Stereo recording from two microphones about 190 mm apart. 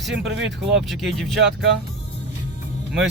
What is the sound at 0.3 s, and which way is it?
Speech, 65° right (ahead or behind).